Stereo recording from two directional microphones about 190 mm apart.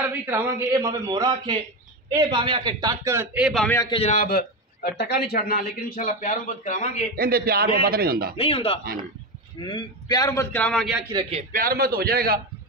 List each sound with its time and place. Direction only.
0.3 s a man's voice: 15° right (ahead or behind)
3.6 s a man's voice: 15° left (ahead or behind)
3.9 s a man's voice: 35° left (ahead or behind)
7.2 s a man's voice: 50° right (ahead or behind)
8.4 s a man's voice: 30° left (ahead or behind); by 11.1 s centre (ahead or behind)
11.1 s a man's voice: 30° right (ahead or behind)
11.5 s a man's voice: 50° right (ahead or behind)